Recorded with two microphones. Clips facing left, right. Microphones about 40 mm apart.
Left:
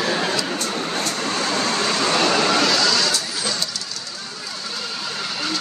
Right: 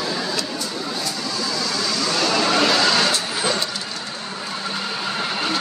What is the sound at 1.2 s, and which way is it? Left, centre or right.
Vehicle, left.